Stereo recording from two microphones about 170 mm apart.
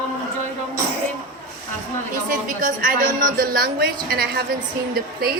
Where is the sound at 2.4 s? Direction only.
55° right (ahead or behind).